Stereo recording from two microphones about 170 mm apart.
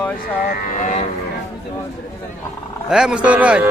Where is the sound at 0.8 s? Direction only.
45° left (ahead or behind).